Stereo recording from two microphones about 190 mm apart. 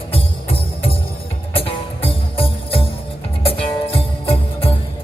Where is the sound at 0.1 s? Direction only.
30° left (ahead or behind).